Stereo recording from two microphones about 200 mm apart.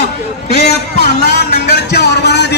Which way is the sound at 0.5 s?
55° left (ahead or behind).